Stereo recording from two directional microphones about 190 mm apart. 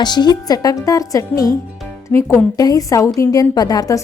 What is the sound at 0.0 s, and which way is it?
A woman's voice, 20° left (ahead or behind).